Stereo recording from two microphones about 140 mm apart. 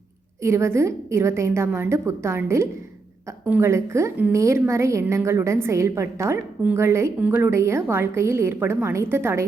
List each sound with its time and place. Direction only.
0.4 s a woman's voice: 20° right (ahead or behind)